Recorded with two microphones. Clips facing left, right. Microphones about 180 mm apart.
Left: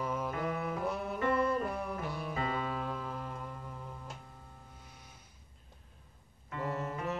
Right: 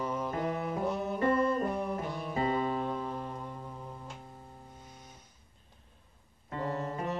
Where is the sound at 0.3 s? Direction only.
30° right (ahead or behind).